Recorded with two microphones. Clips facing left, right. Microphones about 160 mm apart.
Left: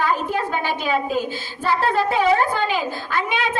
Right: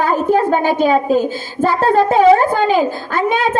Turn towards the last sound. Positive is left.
turn(degrees=-40)  # may be behind; listen again after turning